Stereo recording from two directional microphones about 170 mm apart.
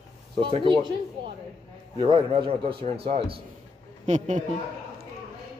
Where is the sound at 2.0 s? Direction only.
30° right (ahead or behind).